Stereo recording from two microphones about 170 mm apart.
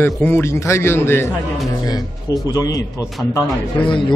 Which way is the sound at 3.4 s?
10° left (ahead or behind).